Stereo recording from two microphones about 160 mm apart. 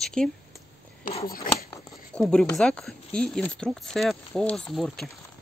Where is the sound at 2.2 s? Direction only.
5° left (ahead or behind).